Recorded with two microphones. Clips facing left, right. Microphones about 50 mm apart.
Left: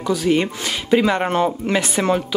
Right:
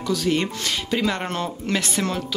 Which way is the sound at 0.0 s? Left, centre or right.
Centre.